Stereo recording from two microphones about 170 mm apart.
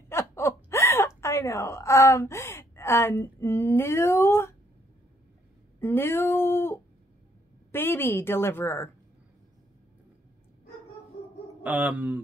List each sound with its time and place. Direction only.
0.1 s speech: 15° left (ahead or behind)
5.8 s a woman's voice: 15° left (ahead or behind)
11.6 s speech: 10° right (ahead or behind)